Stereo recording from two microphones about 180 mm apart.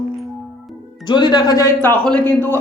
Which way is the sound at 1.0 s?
25° left (ahead or behind).